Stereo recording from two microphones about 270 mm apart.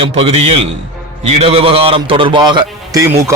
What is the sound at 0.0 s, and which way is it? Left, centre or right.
A man's voice, right.